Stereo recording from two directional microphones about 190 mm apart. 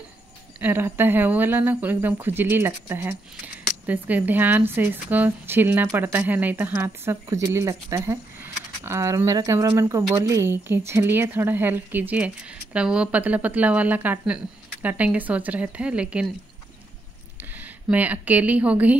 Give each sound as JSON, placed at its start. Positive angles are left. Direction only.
{"t": 0.6, "sound": "speech", "side_deg": -10}
{"t": 17.4, "sound": "speech", "side_deg": -10}